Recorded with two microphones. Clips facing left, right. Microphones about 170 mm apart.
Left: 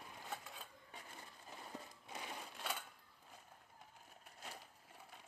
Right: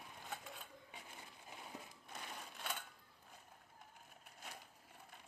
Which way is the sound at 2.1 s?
5° left (ahead or behind).